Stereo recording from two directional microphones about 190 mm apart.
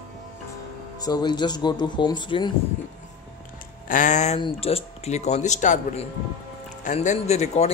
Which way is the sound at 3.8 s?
40° left (ahead or behind).